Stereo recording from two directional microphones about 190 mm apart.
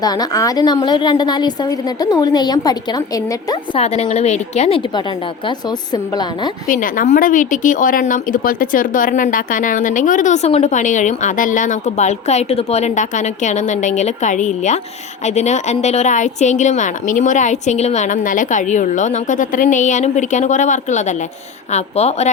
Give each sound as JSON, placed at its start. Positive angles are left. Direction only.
{"t": 0.0, "sound": "a woman's voice", "side_deg": 20}
{"t": 3.8, "sound": "speech", "side_deg": 35}
{"t": 5.5, "sound": "a woman's voice", "side_deg": 20}
{"t": 6.7, "sound": "speech", "side_deg": 45}